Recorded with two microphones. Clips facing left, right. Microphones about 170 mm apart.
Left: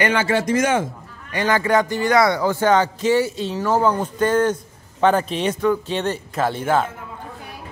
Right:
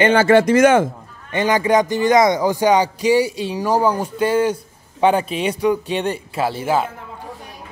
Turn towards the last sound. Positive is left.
turn(degrees=-5)  # may be behind; listen again after turning